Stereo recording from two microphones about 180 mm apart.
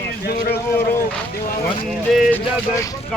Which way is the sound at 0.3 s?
60° left (ahead or behind).